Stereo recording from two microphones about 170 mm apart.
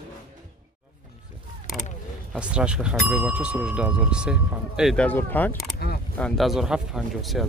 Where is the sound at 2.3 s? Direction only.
5° right (ahead or behind).